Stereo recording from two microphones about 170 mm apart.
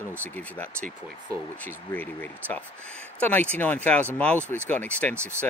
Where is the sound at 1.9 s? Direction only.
10° left (ahead or behind).